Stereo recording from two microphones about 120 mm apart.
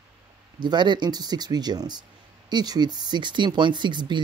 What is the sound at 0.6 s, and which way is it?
Speech, 40° right (ahead or behind).